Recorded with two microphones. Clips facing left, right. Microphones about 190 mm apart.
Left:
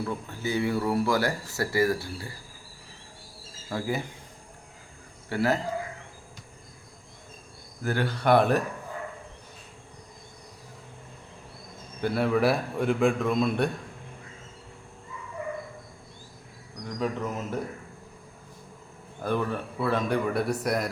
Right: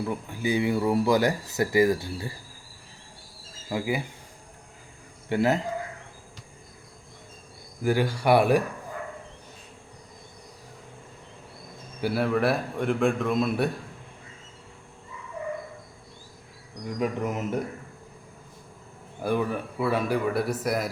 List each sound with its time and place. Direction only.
0.0 s speech: 15° right (ahead or behind)
3.7 s speech: 10° right (ahead or behind)
5.3 s speech: 20° right (ahead or behind)
7.8 s speech: 10° right (ahead or behind)
11.9 s a man's voice: 5° right (ahead or behind)
17.0 s speech: 15° right (ahead or behind)
19.2 s a man's voice: 10° right (ahead or behind)